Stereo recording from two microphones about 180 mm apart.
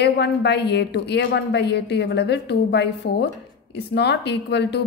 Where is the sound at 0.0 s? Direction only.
70° left (ahead or behind).